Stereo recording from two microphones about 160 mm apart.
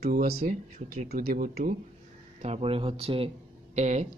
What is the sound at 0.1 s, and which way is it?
Speech, 75° right (ahead or behind).